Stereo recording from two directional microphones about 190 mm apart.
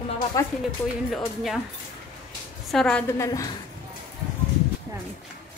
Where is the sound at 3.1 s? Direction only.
15° left (ahead or behind).